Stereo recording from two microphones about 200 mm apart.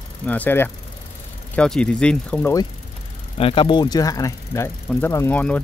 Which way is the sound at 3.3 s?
25° left (ahead or behind).